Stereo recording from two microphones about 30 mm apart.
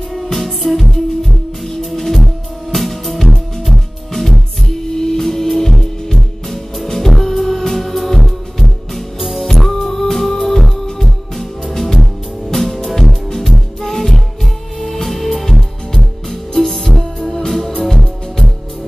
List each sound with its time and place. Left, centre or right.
0.2 s music: centre
4.9 s music: centre
9.2 s music: centre
9.5 s music: centre